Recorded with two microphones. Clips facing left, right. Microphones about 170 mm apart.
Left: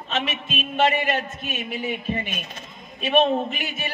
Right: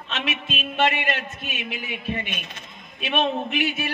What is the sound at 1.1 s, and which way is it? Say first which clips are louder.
A man's voice: left 3 dB; 40° left (ahead or behind).